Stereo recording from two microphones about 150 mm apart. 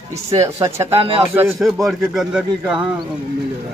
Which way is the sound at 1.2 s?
15° right (ahead or behind).